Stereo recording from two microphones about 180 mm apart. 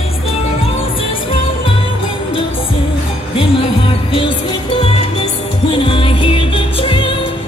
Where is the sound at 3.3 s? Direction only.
30° left (ahead or behind).